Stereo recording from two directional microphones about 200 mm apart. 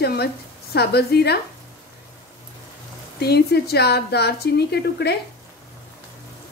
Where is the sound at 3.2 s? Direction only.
55° left (ahead or behind).